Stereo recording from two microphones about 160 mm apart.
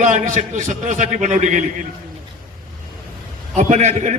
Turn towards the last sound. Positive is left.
turn(degrees=-50)  # may be behind; listen again after turning